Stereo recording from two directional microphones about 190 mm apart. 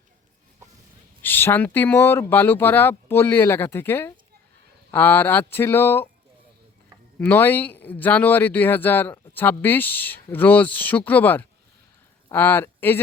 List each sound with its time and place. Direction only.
1.2 s speech: 10° left (ahead or behind)
7.2 s speech: 10° left (ahead or behind)